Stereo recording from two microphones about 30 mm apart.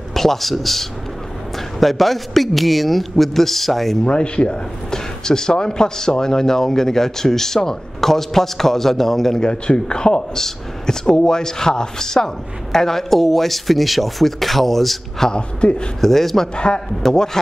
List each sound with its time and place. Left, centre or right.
0.1 s speech: centre
4.0 s a man's voice: left
4.9 s a man's voice: left
9.4 s a man's voice: left; by 15.2 s centre
15.3 s a man's voice: left
16.0 s a man's voice: centre
16.5 s a man's voice: left
17.1 s a man's voice: centre